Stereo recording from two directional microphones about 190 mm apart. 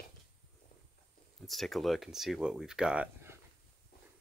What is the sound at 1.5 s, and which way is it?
Speech, centre (ahead or behind).